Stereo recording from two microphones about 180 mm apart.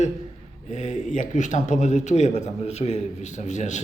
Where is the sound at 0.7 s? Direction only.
40° left (ahead or behind).